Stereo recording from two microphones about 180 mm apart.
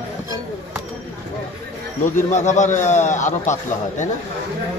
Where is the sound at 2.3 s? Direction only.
40° left (ahead or behind).